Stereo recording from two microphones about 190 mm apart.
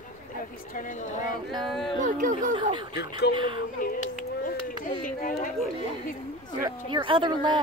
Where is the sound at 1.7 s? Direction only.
Centre (ahead or behind).